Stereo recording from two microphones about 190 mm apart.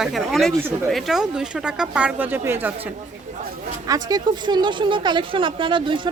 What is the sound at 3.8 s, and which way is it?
A woman's voice, 20° right (ahead or behind).